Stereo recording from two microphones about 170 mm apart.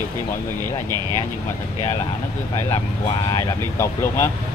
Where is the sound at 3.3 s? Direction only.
15° left (ahead or behind).